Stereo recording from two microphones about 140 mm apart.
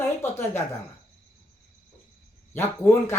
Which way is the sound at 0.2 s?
15° left (ahead or behind).